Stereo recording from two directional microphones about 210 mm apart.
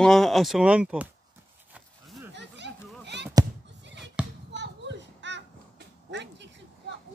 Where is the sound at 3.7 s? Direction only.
55° right (ahead or behind).